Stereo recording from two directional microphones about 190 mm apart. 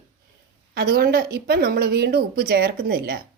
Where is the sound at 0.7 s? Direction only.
55° right (ahead or behind).